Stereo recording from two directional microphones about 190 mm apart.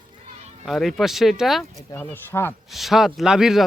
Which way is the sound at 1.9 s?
10° left (ahead or behind).